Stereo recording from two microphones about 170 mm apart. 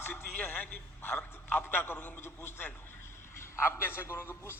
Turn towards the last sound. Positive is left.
turn(degrees=15)  # may be behind; listen again after turning